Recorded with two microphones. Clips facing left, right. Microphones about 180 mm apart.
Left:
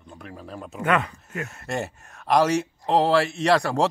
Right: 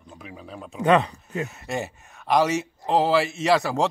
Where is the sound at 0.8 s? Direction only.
20° right (ahead or behind).